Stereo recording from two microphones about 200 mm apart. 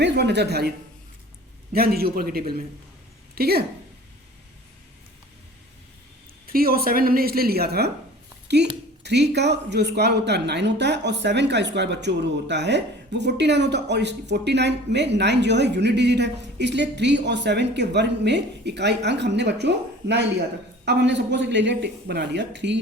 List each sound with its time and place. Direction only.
0.0 s speech: 55° right (ahead or behind)
1.7 s a woman's voice: 50° right (ahead or behind)
6.5 s a woman's voice: 50° right (ahead or behind)